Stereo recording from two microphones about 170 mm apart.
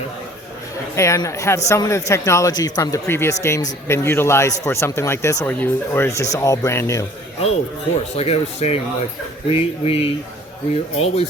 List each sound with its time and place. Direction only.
0.9 s speech: 15° left (ahead or behind)
7.9 s speech: 40° left (ahead or behind)